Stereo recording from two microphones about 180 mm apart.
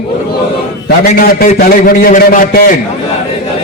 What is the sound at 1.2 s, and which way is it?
A man's voice, 55° left (ahead or behind).